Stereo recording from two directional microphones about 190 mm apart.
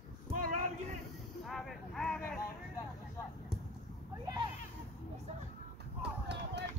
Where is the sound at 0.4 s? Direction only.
45° right (ahead or behind).